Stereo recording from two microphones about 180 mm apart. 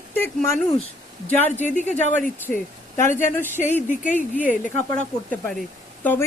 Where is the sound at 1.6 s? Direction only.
40° left (ahead or behind).